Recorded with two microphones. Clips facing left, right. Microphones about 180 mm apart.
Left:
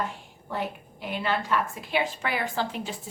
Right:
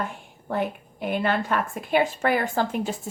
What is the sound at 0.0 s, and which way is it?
A woman's voice, 55° right (ahead or behind).